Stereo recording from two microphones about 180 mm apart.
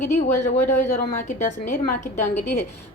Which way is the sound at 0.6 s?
40° left (ahead or behind).